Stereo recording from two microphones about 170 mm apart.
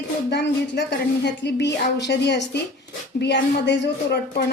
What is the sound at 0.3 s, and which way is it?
A woman's voice, 90° left.